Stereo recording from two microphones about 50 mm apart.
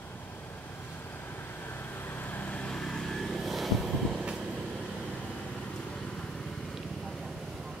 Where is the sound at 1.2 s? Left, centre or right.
Left.